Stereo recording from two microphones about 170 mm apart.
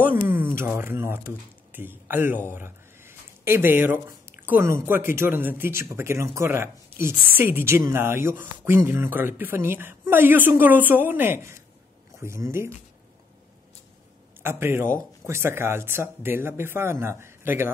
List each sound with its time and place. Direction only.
0.0 s speech: 10° right (ahead or behind)
14.4 s speech: 15° right (ahead or behind)